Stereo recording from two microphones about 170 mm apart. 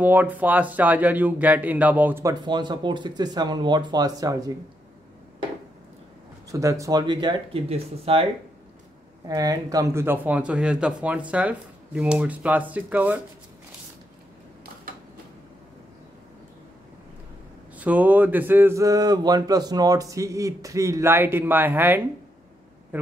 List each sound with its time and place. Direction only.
0.0 s speech: 10° right (ahead or behind)
2.4 s speech: 25° right (ahead or behind)
6.5 s speech: 20° right (ahead or behind); by 8.3 s 35° right (ahead or behind)
9.3 s speech: 20° right (ahead or behind)
17.7 s speech: 10° right (ahead or behind)